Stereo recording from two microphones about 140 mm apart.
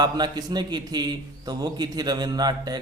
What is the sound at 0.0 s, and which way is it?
A man's voice, 30° right (ahead or behind).